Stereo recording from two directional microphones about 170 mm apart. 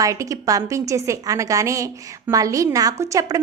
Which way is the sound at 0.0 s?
20° right (ahead or behind).